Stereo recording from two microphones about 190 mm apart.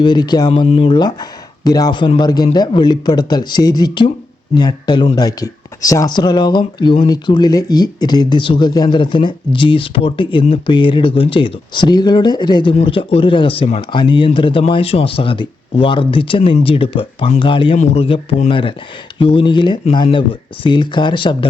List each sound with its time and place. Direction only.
0.0 s speech: 25° left (ahead or behind)